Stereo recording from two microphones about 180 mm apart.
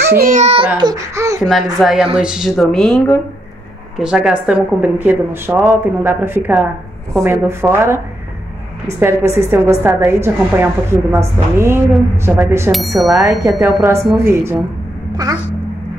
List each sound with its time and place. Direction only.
0.2 s a child's voice: 45° right (ahead or behind)
0.7 s speech: 20° right (ahead or behind)
1.4 s a woman's voice: centre (ahead or behind)
9.0 s a woman's voice: 15° right (ahead or behind)
12.7 s speech: centre (ahead or behind)
13.2 s a woman's voice: 20° right (ahead or behind)